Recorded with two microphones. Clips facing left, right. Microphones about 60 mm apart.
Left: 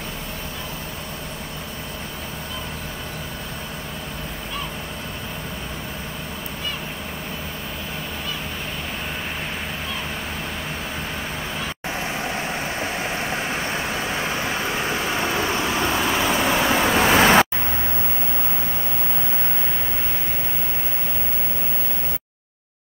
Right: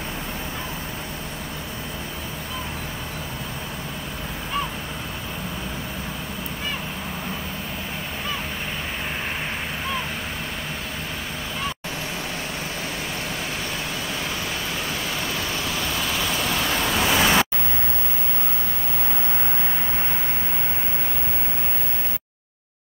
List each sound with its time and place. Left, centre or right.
13.3 s vehicle: left